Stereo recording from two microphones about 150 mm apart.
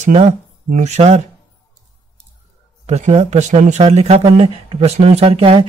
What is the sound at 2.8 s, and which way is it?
Speech, 45° right (ahead or behind).